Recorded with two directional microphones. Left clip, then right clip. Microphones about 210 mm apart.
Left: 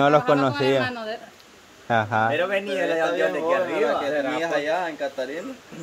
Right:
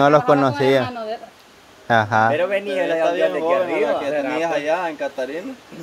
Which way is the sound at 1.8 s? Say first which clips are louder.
Right 5 dB; 10° right (ahead or behind).